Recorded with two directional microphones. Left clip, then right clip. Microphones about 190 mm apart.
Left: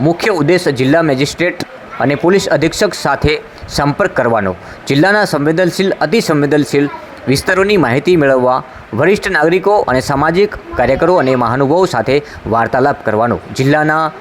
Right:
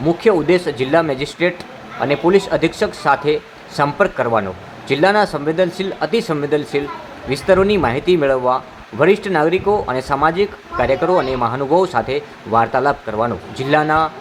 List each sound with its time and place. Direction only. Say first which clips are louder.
0.2 s speech: left 2 dB; 30° left (ahead or behind)